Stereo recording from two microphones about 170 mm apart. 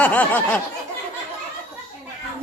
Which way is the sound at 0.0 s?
10° left (ahead or behind).